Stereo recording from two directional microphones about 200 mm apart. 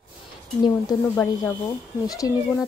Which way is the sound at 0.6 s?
20° left (ahead or behind).